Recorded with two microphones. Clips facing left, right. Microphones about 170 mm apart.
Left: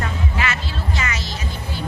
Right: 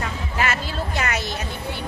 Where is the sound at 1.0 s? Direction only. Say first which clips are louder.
Right 4 dB; 55° right (ahead or behind).